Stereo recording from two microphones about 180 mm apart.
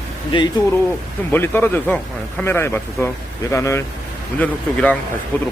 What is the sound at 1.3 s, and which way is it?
Speech, 10° left (ahead or behind).